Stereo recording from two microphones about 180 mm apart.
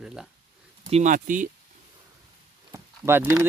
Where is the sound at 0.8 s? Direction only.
40° right (ahead or behind).